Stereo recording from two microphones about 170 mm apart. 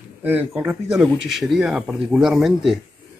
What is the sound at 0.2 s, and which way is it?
A man's voice, 10° right (ahead or behind).